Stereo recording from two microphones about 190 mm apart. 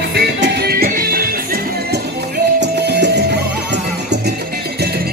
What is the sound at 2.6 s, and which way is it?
Music, 65° right (ahead or behind).